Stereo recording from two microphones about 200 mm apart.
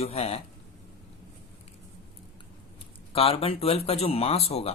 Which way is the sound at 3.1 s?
30° left (ahead or behind).